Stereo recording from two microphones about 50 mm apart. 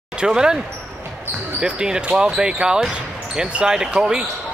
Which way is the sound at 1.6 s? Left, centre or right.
Centre.